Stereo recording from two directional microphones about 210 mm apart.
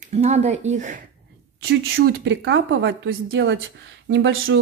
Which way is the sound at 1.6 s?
55° right (ahead or behind).